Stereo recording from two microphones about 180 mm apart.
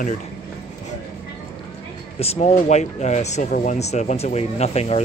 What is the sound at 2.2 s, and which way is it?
Speech, 35° left (ahead or behind).